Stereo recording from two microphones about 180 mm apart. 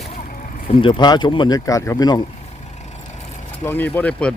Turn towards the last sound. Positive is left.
turn(degrees=5)  # may be behind; listen again after turning